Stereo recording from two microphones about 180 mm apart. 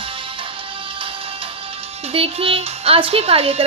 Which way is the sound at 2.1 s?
30° right (ahead or behind).